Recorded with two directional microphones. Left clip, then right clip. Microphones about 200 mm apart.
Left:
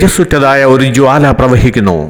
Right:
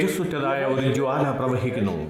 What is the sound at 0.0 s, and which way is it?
A man's voice, 40° left (ahead or behind).